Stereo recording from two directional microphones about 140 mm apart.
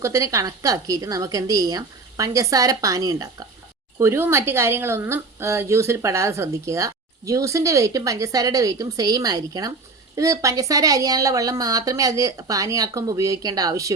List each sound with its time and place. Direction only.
0.0 s a woman's voice: 20° right (ahead or behind)